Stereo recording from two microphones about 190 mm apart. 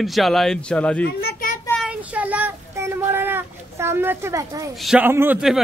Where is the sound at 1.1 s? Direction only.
55° left (ahead or behind).